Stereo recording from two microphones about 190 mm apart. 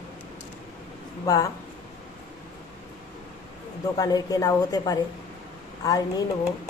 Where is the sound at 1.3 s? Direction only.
20° left (ahead or behind).